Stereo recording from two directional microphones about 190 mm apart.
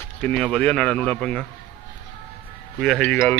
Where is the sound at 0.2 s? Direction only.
5° left (ahead or behind).